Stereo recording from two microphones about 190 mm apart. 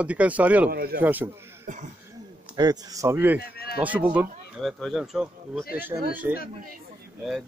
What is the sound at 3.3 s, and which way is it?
Speech, 55° left (ahead or behind).